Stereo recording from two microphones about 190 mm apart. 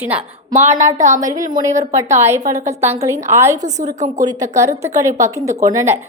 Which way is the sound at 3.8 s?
40° right (ahead or behind).